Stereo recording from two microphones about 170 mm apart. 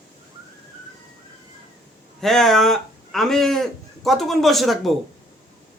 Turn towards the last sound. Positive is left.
turn(degrees=0)  # may be behind; listen again after turning